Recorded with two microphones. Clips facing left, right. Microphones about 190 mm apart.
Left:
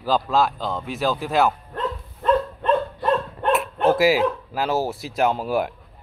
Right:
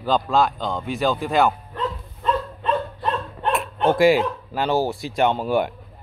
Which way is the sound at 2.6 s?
50° left (ahead or behind).